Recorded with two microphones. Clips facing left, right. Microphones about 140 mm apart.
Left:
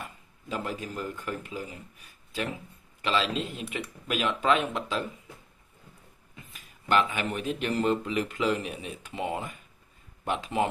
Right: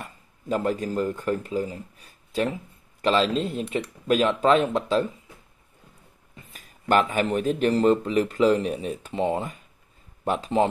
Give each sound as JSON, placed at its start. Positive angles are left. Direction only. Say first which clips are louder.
{"t": 0.5, "sound": "speech", "louder": "right 9 dB", "side_deg": -40}
{"t": 6.5, "sound": "speech", "louder": "right 4 dB", "side_deg": -45}